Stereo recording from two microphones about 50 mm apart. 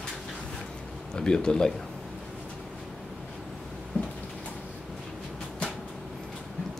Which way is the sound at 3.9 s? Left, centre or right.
Left.